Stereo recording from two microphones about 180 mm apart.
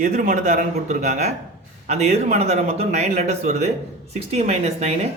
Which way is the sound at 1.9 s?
40° right (ahead or behind).